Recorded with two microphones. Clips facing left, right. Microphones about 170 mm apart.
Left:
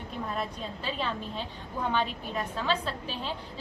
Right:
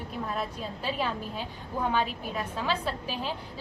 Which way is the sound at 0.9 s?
10° right (ahead or behind).